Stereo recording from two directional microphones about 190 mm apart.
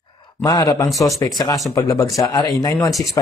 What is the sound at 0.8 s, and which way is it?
Speech, centre (ahead or behind).